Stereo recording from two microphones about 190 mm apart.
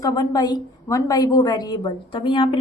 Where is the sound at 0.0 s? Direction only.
20° left (ahead or behind).